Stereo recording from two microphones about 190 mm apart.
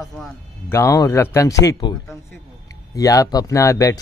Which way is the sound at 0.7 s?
15° left (ahead or behind).